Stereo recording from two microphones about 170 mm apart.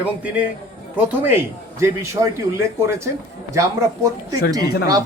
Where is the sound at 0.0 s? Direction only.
10° right (ahead or behind).